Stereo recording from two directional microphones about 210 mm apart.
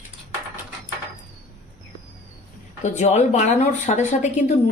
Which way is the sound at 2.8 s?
35° left (ahead or behind).